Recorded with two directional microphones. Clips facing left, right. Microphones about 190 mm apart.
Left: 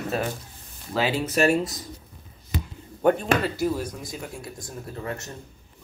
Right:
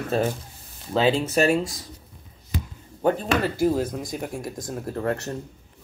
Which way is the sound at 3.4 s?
50° right (ahead or behind).